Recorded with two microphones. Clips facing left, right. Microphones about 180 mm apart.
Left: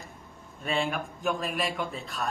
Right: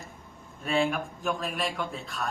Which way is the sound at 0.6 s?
Centre (ahead or behind).